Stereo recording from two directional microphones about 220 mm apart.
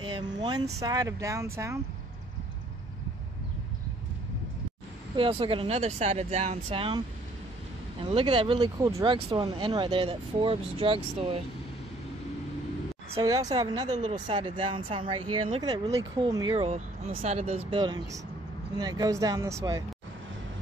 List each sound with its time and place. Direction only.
0.0 s speech: 20° right (ahead or behind)
5.1 s speech: 25° right (ahead or behind)
8.0 s speech: 25° right (ahead or behind)
13.2 s speech: 15° right (ahead or behind)